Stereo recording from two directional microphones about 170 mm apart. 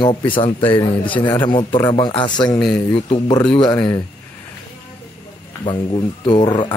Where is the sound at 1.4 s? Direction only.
25° left (ahead or behind).